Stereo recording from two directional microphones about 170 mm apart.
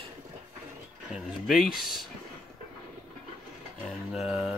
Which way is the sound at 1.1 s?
Centre (ahead or behind).